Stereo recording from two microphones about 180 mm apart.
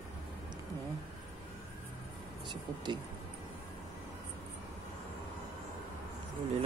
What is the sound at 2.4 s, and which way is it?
Speech, 25° right (ahead or behind).